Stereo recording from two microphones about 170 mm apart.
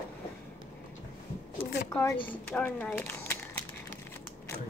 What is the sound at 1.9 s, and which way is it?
A woman's voice, 15° left (ahead or behind).